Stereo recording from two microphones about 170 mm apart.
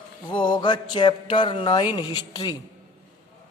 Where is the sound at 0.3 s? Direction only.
25° left (ahead or behind).